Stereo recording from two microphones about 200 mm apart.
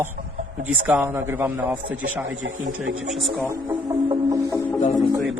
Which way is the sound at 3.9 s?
15° right (ahead or behind).